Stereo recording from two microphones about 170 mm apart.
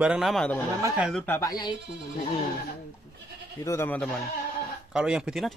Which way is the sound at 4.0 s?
5° left (ahead or behind).